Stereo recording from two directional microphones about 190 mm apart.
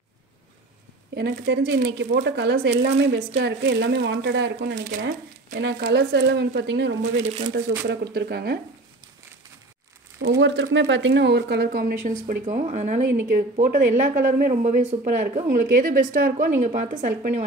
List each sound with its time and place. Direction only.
1.1 s a woman's voice: 50° right (ahead or behind)
7.2 s speech: 35° right (ahead or behind)
7.5 s speech: 65° right (ahead or behind)
10.2 s speech: 65° right (ahead or behind); by 17.5 s 40° right (ahead or behind)